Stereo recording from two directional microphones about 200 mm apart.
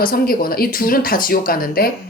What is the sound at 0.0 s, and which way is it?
Speech, 45° left (ahead or behind).